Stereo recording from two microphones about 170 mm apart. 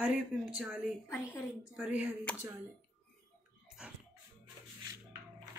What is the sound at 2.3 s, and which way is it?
Speech, 5° left (ahead or behind).